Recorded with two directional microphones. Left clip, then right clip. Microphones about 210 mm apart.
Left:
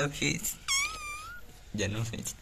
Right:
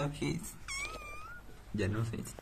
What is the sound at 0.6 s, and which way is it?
Wail, 15° right (ahead or behind).